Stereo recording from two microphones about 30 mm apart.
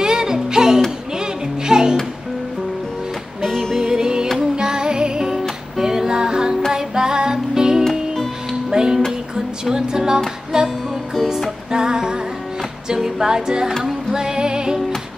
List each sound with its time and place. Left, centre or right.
0.0 s music: right
3.8 s music: right
5.3 s music: centre
11.7 s music: right